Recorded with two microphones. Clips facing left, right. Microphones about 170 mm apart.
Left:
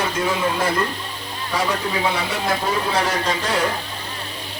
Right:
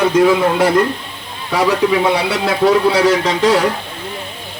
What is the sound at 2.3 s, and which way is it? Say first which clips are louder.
Speech: right 9 dB; 80° right.